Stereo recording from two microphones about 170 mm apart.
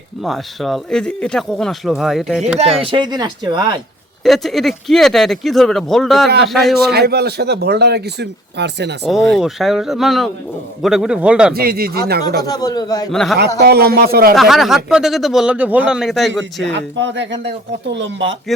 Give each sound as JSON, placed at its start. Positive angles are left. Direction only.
{"t": 0.2, "sound": "speech", "side_deg": 0}
{"t": 2.8, "sound": "speech", "side_deg": -30}
{"t": 4.2, "sound": "speech", "side_deg": 0}
{"t": 6.9, "sound": "speech", "side_deg": -70}
{"t": 9.3, "sound": "speech", "side_deg": 0}
{"t": 11.5, "sound": "speech", "side_deg": -65}
{"t": 12.4, "sound": "a man's voice", "side_deg": 25}
{"t": 13.1, "sound": "speech", "side_deg": 0}
{"t": 13.6, "sound": "speech", "side_deg": -70}
{"t": 14.3, "sound": "speech", "side_deg": 0}
{"t": 16.7, "sound": "speech", "side_deg": -90}